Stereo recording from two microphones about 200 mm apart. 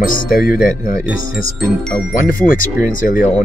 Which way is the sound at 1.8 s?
5° left (ahead or behind).